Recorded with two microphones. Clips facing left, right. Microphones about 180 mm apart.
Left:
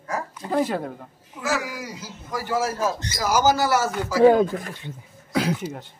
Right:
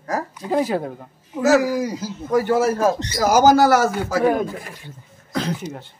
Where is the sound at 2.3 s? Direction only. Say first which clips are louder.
Right 8 dB; 60° right (ahead or behind).